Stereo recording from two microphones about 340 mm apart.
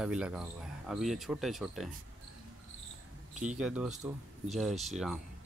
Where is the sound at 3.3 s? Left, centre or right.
Right.